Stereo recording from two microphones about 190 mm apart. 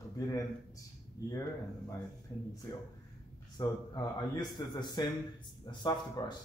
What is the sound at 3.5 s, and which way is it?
A man's voice, 20° left (ahead or behind).